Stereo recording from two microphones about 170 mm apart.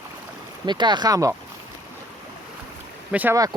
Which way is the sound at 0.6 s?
25° right (ahead or behind).